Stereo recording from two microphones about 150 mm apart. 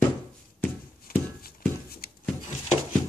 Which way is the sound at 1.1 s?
80° left.